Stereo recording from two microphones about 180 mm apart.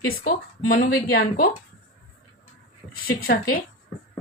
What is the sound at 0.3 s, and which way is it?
Speech, 55° left (ahead or behind).